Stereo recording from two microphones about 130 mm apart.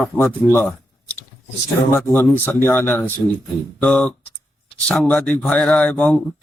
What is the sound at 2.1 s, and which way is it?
Speech, 15° left (ahead or behind).